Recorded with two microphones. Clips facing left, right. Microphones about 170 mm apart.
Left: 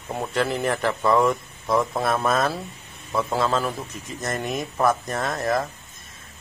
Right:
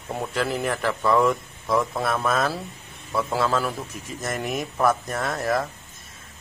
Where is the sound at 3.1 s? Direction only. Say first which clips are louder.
Left 1 dB; 20° left (ahead or behind).